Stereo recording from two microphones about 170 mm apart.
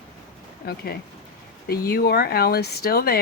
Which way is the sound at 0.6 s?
65° left (ahead or behind).